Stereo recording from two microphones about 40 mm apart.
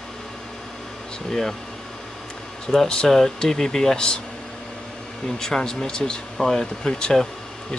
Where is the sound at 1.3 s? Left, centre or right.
Centre.